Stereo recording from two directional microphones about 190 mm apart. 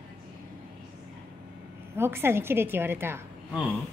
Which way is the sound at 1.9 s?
10° right (ahead or behind).